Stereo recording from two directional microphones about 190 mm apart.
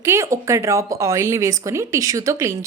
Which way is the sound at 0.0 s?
15° right (ahead or behind).